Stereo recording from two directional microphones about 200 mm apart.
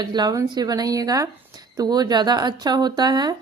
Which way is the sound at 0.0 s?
20° right (ahead or behind).